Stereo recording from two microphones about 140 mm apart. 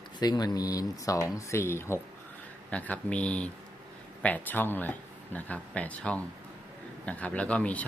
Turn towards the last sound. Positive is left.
turn(degrees=10)  # may be behind; listen again after turning